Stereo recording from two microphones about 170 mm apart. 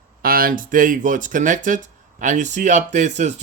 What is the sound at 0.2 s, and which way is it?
Speech, 60° right (ahead or behind).